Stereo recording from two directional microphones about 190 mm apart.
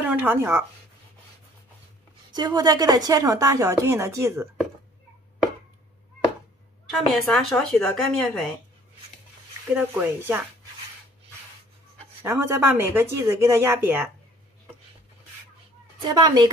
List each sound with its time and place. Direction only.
0.0 s speech: 10° right (ahead or behind)
2.3 s speech: 20° right (ahead or behind)
6.9 s speech: centre (ahead or behind)
9.8 s speech: 10° right (ahead or behind)
12.2 s speech: 10° right (ahead or behind)
16.1 s a woman's voice: 20° right (ahead or behind)